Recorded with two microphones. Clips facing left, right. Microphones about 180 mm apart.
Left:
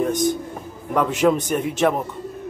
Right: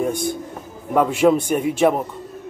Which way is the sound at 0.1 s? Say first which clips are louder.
Left 4 dB; 40° left (ahead or behind).